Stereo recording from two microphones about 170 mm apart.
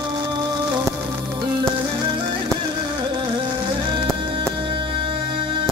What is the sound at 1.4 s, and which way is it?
Music, 25° right (ahead or behind).